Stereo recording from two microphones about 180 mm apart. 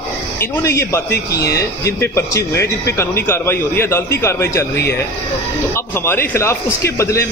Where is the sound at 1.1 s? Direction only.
60° left (ahead or behind).